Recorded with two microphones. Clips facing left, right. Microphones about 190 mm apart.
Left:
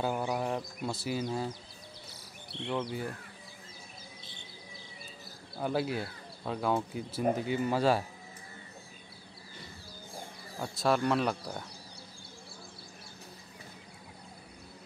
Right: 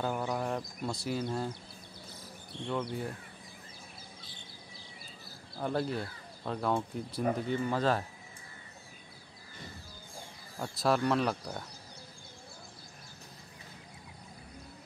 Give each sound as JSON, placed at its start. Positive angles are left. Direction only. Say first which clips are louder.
{"t": 0.0, "sound": "speech", "louder": "left 1 dB", "side_deg": 10}
{"t": 2.0, "sound": "insect", "louder": "right 2 dB", "side_deg": 75}
{"t": 2.7, "sound": "speech", "louder": "left 1 dB", "side_deg": 0}
{"t": 5.6, "sound": "speech", "louder": "left 1 dB", "side_deg": 5}
{"t": 10.6, "sound": "speech", "louder": "even", "side_deg": 0}